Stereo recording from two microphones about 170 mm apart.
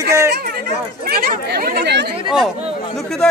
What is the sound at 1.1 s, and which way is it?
Speech, 60° right (ahead or behind).